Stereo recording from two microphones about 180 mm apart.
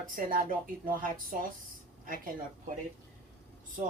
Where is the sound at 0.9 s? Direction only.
50° right (ahead or behind).